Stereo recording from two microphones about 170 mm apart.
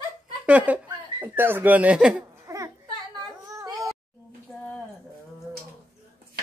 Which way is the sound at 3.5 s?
20° right (ahead or behind).